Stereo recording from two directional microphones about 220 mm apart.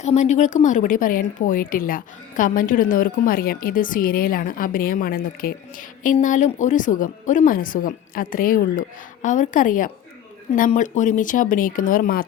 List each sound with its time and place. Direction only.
0.0 s a woman's voice: 30° left (ahead or behind)